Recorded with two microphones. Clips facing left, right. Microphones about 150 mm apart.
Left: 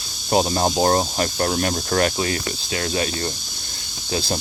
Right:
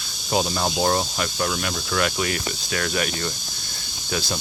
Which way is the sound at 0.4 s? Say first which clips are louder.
Left 4 dB; 35° left (ahead or behind).